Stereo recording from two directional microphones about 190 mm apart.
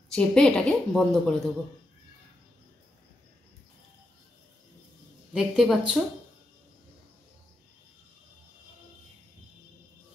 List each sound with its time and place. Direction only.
0.1 s a woman's voice: 5° left (ahead or behind)
5.3 s a woman's voice: 5° right (ahead or behind)